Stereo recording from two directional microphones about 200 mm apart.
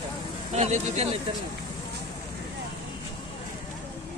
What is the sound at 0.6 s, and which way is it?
Speech, 35° right (ahead or behind).